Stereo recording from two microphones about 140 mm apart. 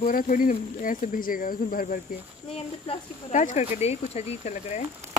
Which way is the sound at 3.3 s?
60° left (ahead or behind).